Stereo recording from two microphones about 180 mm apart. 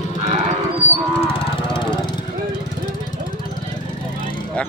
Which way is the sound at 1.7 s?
25° left (ahead or behind).